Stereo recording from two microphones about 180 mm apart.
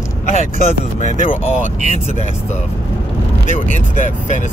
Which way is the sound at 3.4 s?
45° left (ahead or behind).